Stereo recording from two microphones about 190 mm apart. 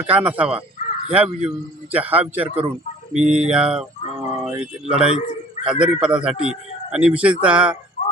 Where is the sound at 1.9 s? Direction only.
10° right (ahead or behind).